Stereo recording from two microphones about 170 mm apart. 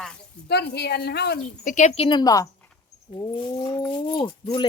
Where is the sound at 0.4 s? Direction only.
75° left (ahead or behind).